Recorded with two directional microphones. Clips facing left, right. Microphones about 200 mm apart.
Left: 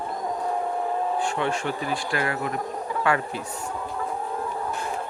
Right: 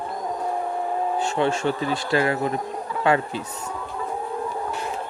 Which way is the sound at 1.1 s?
25° right (ahead or behind).